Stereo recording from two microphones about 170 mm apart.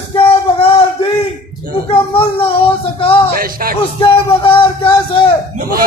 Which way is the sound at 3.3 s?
60° right (ahead or behind).